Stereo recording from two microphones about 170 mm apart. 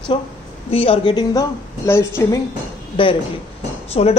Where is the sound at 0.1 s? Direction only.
30° left (ahead or behind).